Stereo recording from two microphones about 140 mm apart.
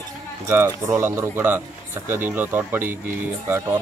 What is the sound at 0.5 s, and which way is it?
Speech, 20° right (ahead or behind).